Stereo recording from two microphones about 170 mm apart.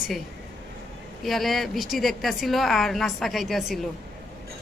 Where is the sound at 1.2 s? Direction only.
Centre (ahead or behind).